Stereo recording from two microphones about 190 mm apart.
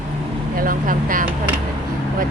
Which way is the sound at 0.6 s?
45° right (ahead or behind).